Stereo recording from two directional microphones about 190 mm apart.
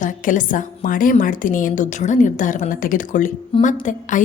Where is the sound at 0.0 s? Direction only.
45° left (ahead or behind).